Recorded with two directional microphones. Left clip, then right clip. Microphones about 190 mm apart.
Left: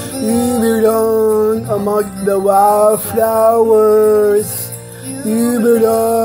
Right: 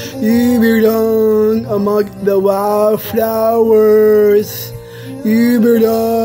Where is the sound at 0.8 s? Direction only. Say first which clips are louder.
Left 2 dB; 25° right (ahead or behind).